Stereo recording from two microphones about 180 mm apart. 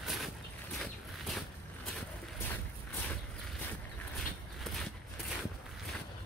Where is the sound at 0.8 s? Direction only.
Centre (ahead or behind).